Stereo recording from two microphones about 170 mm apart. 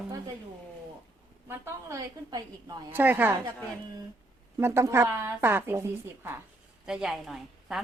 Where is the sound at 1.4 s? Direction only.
15° right (ahead or behind).